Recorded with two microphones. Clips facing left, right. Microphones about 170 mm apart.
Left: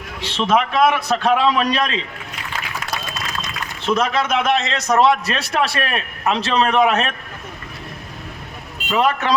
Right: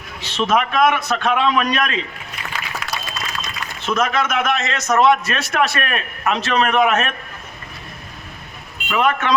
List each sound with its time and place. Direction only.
0.2 s a man's voice: 30° left (ahead or behind)
3.8 s a man's voice: 30° left (ahead or behind)
8.9 s a man's voice: 35° left (ahead or behind)